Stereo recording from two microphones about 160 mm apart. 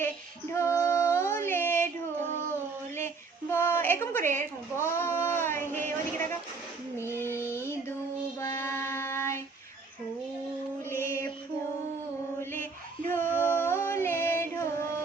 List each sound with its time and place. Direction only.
0.5 s female singing: 15° left (ahead or behind)
3.5 s child singing: 15° left (ahead or behind)
7.5 s music: 15° left (ahead or behind)
8.4 s child singing: 15° left (ahead or behind)
10.8 s mantra: 15° left (ahead or behind)
12.4 s a sound: 15° left (ahead or behind)
13.1 s music: 10° left (ahead or behind)